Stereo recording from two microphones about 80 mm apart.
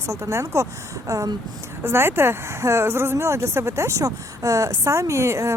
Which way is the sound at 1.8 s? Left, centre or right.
Right.